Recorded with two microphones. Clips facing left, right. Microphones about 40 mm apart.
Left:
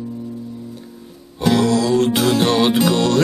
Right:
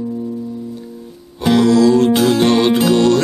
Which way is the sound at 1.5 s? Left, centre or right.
Centre.